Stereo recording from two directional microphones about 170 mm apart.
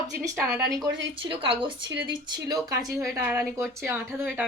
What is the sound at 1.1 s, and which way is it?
A woman's voice, 30° right (ahead or behind).